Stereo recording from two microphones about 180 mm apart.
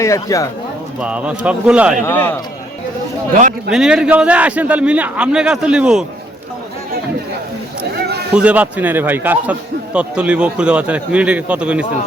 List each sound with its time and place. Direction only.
0.0 s speech: 15° left (ahead or behind)
1.0 s a man's voice: 5° right (ahead or behind)
2.0 s speech: 10° left (ahead or behind)
3.7 s a man's voice: 5° right (ahead or behind)
8.3 s a man's voice: 5° right (ahead or behind)